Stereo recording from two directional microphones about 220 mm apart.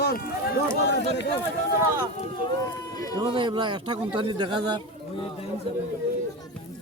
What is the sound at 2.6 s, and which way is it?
Speech, 15° left (ahead or behind).